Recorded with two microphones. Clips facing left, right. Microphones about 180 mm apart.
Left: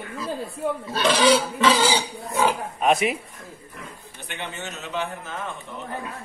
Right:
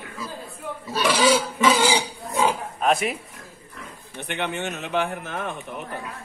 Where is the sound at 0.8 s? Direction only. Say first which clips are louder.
Even; 10° right (ahead or behind).